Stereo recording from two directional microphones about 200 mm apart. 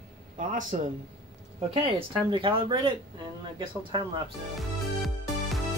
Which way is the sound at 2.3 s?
25° right (ahead or behind).